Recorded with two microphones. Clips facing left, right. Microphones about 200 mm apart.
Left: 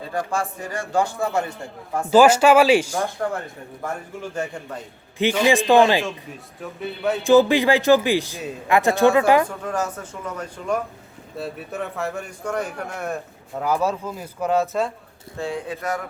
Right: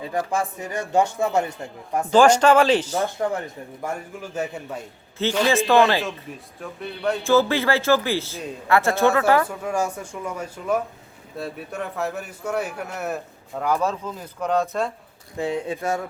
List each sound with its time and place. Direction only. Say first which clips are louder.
0.1 s speech: even; 20° right (ahead or behind)
2.0 s speech: left 1 dB; 5° left (ahead or behind)
4.4 s speech: right 2 dB; 5° right (ahead or behind)
5.1 s speech: left 2 dB; 15° left (ahead or behind)
6.6 s a man's voice: left 2 dB; 5° left (ahead or behind)
7.3 s speech: left 5 dB; 15° left (ahead or behind)
9.5 s a man's voice: right 1 dB; 10° right (ahead or behind)
13.6 s a man's voice: left 1 dB; 5° left (ahead or behind)
15.4 s speech: right 2 dB; 20° right (ahead or behind)